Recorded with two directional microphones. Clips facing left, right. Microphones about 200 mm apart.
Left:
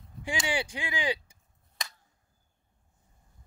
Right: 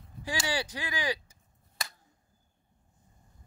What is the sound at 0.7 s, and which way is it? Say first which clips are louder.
Speech: left 1 dB; 20° left (ahead or behind).